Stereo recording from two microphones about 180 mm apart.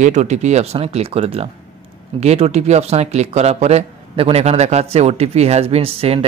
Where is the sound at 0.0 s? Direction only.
40° right (ahead or behind).